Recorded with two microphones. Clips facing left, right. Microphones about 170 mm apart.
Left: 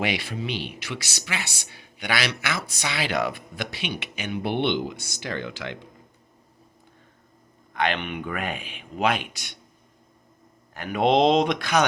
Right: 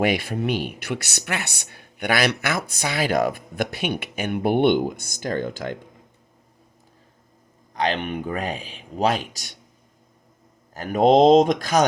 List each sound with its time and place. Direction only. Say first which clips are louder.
0.0 s speech: right 6 dB; 50° right (ahead or behind)
7.7 s speech: right 2 dB; 40° right (ahead or behind)
10.8 s speech: right 5 dB; 45° right (ahead or behind)